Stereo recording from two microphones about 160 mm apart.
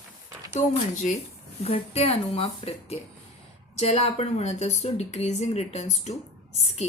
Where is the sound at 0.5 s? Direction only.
50° left (ahead or behind).